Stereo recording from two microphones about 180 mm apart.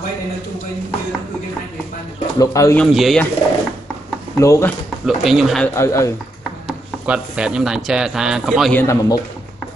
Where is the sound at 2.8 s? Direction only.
Centre (ahead or behind).